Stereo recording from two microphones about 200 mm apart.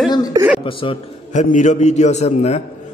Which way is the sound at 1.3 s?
40° left (ahead or behind).